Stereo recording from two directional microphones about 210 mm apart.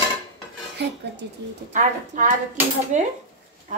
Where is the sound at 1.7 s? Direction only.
35° right (ahead or behind).